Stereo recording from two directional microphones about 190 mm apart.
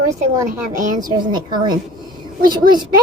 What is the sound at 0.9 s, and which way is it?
A woman's voice, 20° right (ahead or behind).